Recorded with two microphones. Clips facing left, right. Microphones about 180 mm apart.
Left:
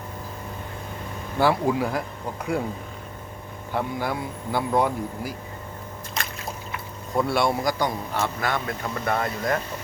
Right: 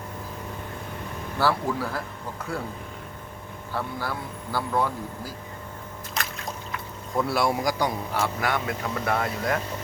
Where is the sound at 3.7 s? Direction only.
20° left (ahead or behind).